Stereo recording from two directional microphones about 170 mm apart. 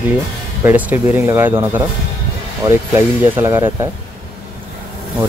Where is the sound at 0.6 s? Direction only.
10° right (ahead or behind).